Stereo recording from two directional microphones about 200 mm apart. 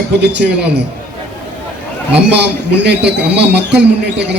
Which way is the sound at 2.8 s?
60° right (ahead or behind).